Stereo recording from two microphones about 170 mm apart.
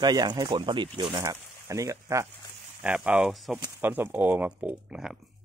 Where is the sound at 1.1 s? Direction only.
20° right (ahead or behind).